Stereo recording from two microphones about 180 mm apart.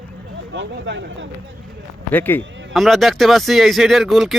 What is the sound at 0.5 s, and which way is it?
Speech, 80° right.